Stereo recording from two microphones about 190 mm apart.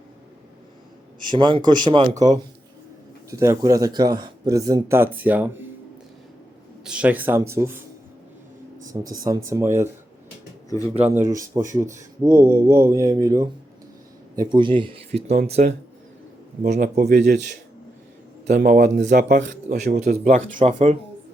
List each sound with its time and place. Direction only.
1.3 s speech: 25° right (ahead or behind); by 5.5 s 10° right (ahead or behind)
6.8 s speech: 5° right (ahead or behind)
8.9 s speech: 20° right (ahead or behind)
10.7 s speech: 15° left (ahead or behind)
11.1 s speech: 15° right (ahead or behind); by 17.2 s 40° right (ahead or behind)
18.4 s speech: 40° right (ahead or behind)